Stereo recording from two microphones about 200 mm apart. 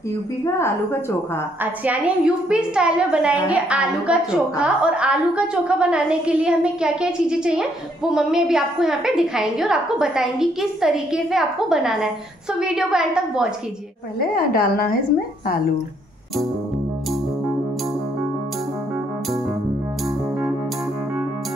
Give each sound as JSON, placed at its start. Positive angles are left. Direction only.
{"t": 0.5, "sound": "a woman's voice", "side_deg": 15}
{"t": 1.6, "sound": "a woman's voice", "side_deg": -5}
{"t": 14.2, "sound": "a woman's voice", "side_deg": 50}